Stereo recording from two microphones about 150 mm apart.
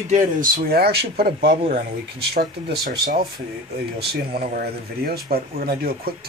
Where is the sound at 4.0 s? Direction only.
90° right.